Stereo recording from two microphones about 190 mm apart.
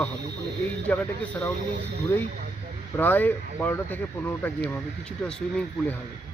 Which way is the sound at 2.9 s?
10° left (ahead or behind).